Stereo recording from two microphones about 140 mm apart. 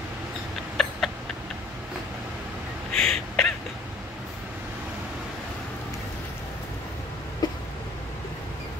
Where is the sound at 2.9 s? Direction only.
5° left (ahead or behind).